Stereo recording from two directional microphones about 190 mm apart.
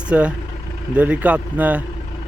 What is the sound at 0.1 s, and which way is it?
Speech, 5° right (ahead or behind).